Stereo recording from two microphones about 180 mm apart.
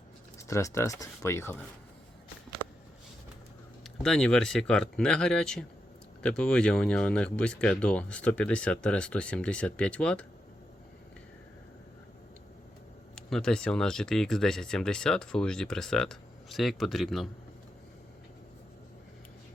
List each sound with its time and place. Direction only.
0.3 s speech: 15° left (ahead or behind)
3.8 s speech: 5° left (ahead or behind)
13.1 s speech: 5° left (ahead or behind)